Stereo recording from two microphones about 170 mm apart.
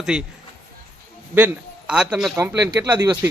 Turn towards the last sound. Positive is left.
turn(degrees=-20)  # may be behind; listen again after turning